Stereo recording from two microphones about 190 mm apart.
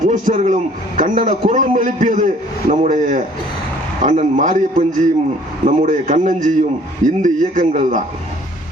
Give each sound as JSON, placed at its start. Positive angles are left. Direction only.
{"t": 0.0, "sound": "a man's voice", "side_deg": -40}